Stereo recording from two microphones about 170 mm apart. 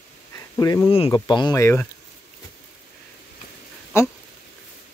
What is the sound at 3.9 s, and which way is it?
Speech, 15° left (ahead or behind).